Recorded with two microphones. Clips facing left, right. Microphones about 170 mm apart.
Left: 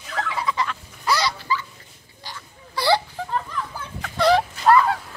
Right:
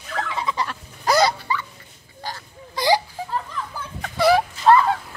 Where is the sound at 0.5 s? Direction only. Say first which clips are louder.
Left 1 dB; 45° right (ahead or behind).